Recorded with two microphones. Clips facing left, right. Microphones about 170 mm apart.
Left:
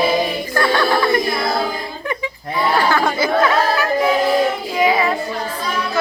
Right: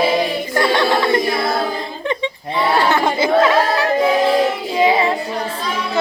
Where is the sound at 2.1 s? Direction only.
25° right (ahead or behind).